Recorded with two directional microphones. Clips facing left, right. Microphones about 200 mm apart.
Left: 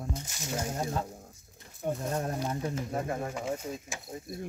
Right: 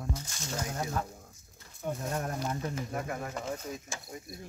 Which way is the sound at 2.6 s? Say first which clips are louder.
Left 3 dB; 25° left (ahead or behind).